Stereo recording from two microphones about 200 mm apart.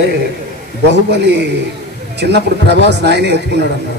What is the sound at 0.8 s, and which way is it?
Speech, 60° right (ahead or behind).